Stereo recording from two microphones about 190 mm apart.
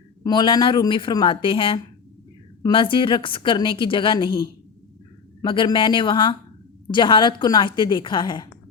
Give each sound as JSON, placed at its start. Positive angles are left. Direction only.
{"t": 0.2, "sound": "a woman's voice", "side_deg": 25}